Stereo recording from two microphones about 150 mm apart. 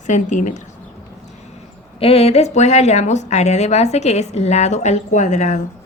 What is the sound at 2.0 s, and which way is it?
A woman's voice, 40° left (ahead or behind).